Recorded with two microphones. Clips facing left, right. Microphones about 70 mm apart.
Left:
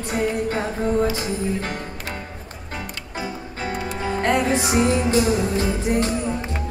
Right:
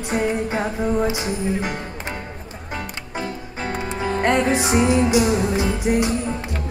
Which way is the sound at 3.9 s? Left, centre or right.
Centre.